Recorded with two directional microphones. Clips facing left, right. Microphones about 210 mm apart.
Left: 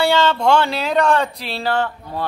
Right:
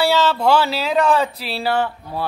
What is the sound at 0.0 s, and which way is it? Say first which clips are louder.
Speech: left 1 dB; 5° right (ahead or behind).